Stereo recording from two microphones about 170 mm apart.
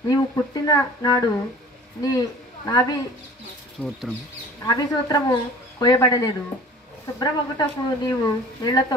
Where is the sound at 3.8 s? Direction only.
5° left (ahead or behind).